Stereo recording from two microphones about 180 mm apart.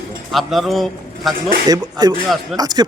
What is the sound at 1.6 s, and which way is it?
Speech, 20° right (ahead or behind).